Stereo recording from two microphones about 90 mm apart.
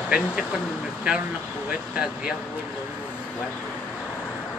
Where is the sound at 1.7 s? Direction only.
10° right (ahead or behind).